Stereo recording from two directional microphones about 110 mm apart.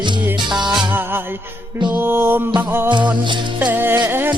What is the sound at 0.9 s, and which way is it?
Music, 20° right (ahead or behind).